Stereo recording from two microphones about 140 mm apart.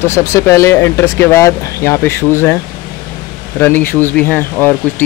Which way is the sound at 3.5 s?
15° left (ahead or behind).